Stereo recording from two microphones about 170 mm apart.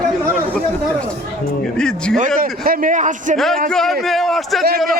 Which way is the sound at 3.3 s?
Centre (ahead or behind).